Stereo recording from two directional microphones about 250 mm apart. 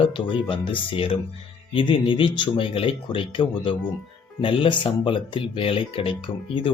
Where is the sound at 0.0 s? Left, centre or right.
Centre.